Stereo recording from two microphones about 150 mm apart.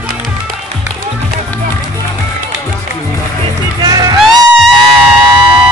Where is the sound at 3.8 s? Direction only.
25° right (ahead or behind).